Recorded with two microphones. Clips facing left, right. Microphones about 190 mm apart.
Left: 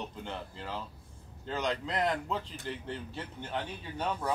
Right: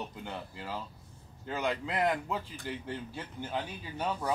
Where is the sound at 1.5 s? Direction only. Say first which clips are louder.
Even; 10° right (ahead or behind).